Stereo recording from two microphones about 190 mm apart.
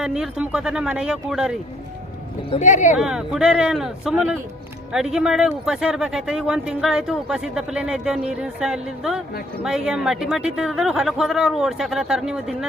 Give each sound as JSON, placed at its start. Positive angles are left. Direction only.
{"t": 0.0, "sound": "speech", "side_deg": -5}
{"t": 2.6, "sound": "speech", "side_deg": 40}
{"t": 3.0, "sound": "speech", "side_deg": -5}